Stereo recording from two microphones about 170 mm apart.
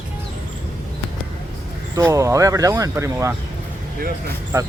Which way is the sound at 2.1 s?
20° right (ahead or behind).